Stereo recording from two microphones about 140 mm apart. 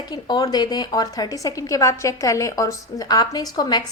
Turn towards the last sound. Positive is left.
turn(degrees=30)  # may be behind; listen again after turning